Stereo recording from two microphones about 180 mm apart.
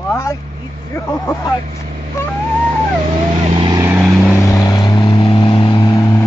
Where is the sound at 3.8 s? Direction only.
10° right (ahead or behind).